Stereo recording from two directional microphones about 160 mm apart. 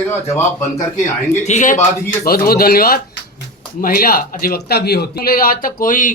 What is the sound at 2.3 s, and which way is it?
Speech, 70° left (ahead or behind).